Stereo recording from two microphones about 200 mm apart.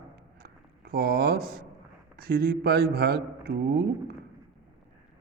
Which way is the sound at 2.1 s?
50° right (ahead or behind).